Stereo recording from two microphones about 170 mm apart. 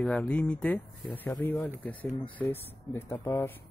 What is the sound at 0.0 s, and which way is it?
Speech, 5° left (ahead or behind).